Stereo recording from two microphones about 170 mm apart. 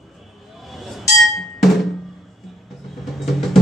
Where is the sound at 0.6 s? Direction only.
Centre (ahead or behind).